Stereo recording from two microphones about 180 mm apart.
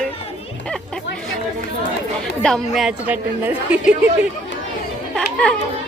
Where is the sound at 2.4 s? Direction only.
Centre (ahead or behind).